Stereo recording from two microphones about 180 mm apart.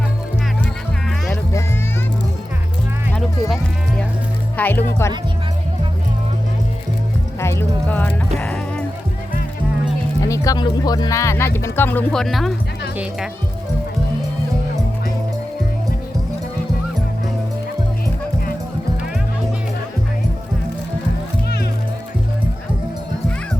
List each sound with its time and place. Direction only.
4.5 s speech: 10° left (ahead or behind)
7.3 s music: 15° left (ahead or behind)
10.2 s speech: 20° left (ahead or behind); by 12.5 s centre (ahead or behind)